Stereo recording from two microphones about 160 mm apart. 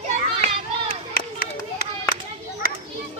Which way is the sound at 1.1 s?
70° left (ahead or behind).